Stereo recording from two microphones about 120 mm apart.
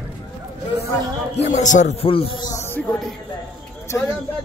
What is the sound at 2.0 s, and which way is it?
Speech, 50° left (ahead or behind).